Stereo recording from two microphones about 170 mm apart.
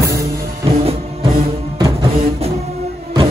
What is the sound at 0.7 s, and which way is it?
Music, 35° right (ahead or behind).